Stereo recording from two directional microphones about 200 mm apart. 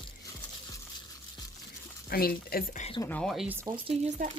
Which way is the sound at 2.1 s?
50° left (ahead or behind).